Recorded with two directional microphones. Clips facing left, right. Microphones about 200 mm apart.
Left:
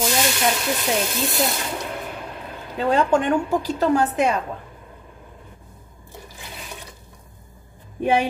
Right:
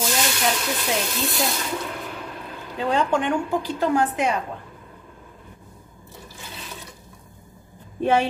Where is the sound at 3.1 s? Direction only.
45° left (ahead or behind).